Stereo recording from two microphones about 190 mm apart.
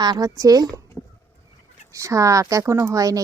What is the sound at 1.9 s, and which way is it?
A woman's voice, 15° right (ahead or behind).